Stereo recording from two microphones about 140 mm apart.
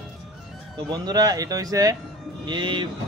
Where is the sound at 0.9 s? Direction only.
30° right (ahead or behind).